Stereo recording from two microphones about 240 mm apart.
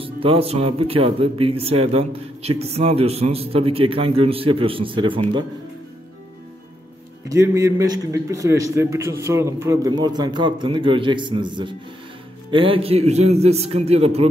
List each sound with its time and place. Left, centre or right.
0.0 s speech: right
7.2 s a man's voice: centre